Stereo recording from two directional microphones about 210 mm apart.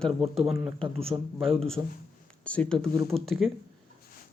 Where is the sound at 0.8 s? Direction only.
25° right (ahead or behind).